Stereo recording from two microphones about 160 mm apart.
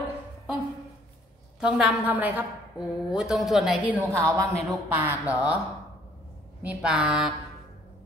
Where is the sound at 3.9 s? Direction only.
15° right (ahead or behind).